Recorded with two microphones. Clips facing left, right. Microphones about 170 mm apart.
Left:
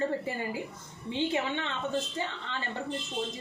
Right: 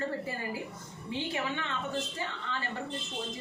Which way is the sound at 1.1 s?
25° left (ahead or behind).